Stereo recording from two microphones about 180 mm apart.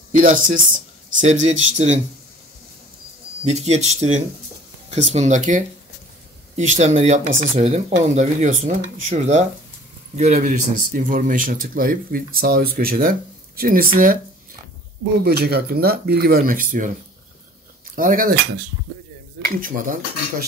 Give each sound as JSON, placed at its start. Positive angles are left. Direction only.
{"t": 0.1, "sound": "speech", "side_deg": -45}
{"t": 3.4, "sound": "speech", "side_deg": -40}
{"t": 15.2, "sound": "speech", "side_deg": -60}
{"t": 17.9, "sound": "speech", "side_deg": -50}
{"t": 19.6, "sound": "speech", "side_deg": -50}